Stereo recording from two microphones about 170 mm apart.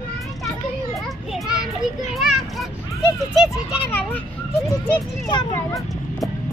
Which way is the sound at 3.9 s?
10° left (ahead or behind).